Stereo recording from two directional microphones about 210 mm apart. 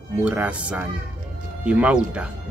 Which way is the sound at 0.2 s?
5° right (ahead or behind).